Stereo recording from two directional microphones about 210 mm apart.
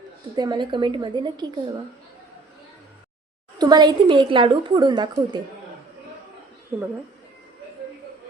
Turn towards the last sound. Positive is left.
turn(degrees=-10)  # may be behind; listen again after turning